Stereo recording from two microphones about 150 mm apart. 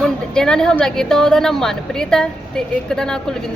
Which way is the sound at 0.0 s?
5° left (ahead or behind).